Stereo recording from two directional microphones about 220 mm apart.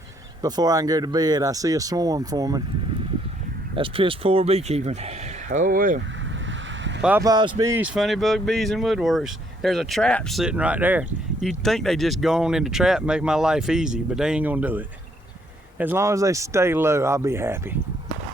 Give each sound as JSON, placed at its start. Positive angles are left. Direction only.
{"t": 0.4, "sound": "speech", "side_deg": -15}
{"t": 3.8, "sound": "speech", "side_deg": -25}
{"t": 7.0, "sound": "speech", "side_deg": -10}
{"t": 7.9, "sound": "speech", "side_deg": 0}